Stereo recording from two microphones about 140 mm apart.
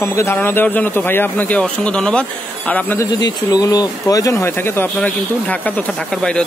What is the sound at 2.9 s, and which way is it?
Speech, 30° left (ahead or behind).